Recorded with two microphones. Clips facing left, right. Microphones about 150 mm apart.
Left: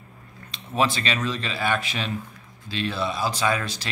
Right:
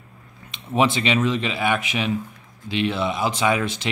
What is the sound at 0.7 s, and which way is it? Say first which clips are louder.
A man's voice: right 4 dB; 20° right (ahead or behind).